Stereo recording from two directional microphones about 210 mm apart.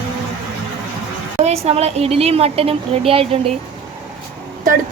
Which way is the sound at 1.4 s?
30° right (ahead or behind).